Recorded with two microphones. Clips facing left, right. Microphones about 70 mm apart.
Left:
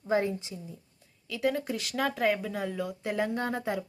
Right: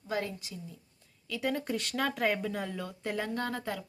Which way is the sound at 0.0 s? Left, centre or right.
Left.